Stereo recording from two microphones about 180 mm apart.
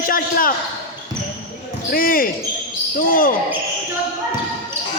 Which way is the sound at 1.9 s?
50° left (ahead or behind).